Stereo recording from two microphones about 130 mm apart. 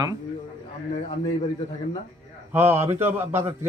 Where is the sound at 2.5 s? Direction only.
20° right (ahead or behind).